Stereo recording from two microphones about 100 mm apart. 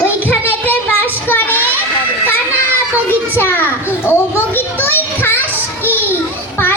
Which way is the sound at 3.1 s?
25° left (ahead or behind).